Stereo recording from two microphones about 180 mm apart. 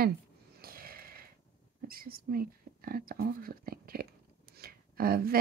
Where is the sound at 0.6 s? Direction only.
55° right (ahead or behind).